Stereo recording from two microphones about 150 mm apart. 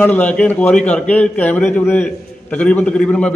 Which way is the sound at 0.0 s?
10° left (ahead or behind).